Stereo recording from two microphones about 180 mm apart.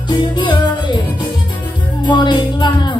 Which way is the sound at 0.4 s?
25° left (ahead or behind).